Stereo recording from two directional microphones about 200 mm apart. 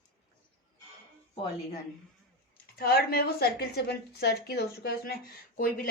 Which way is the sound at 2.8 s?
50° left (ahead or behind).